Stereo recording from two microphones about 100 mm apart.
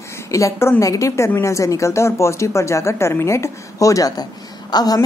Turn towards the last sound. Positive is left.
turn(degrees=40)  # may be behind; listen again after turning